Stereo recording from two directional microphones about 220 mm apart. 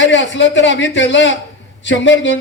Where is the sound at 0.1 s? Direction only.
55° left (ahead or behind).